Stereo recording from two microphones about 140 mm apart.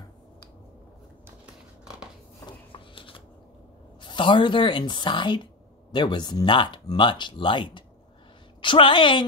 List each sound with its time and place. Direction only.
1.4 s scissors: 5° right (ahead or behind)
2.4 s a sound: 35° left (ahead or behind)
4.0 s a woman's voice: 35° left (ahead or behind)